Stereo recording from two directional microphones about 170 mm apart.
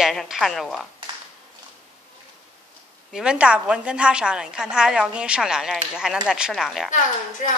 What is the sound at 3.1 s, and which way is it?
A woman's voice, 5° right (ahead or behind).